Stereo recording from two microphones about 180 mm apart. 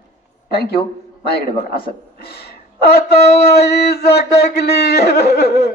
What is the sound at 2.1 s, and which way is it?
Speech, 60° left (ahead or behind).